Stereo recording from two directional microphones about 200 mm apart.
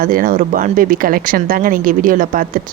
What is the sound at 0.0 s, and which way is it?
Speech, 45° right (ahead or behind).